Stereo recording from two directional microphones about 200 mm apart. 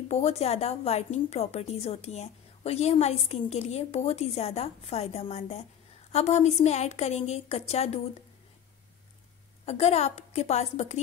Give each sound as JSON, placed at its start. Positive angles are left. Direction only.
{"t": 0.1, "sound": "a woman's voice", "side_deg": 30}
{"t": 9.7, "sound": "a woman's voice", "side_deg": 35}